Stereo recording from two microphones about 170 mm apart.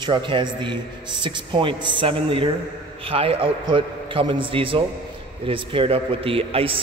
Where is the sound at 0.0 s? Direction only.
30° right (ahead or behind).